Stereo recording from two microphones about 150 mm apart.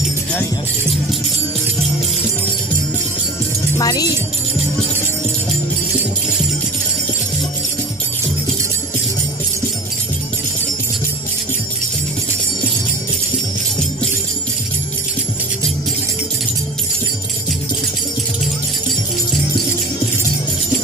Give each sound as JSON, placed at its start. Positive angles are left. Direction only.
{"t": 3.7, "sound": "speech", "side_deg": 25}